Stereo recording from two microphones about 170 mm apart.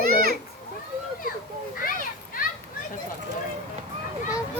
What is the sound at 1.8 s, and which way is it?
Children playing, 55° left (ahead or behind).